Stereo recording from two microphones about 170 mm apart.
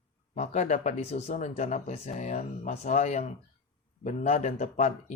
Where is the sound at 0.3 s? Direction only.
40° left (ahead or behind).